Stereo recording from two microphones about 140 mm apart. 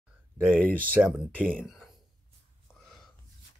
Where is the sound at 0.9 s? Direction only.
10° right (ahead or behind).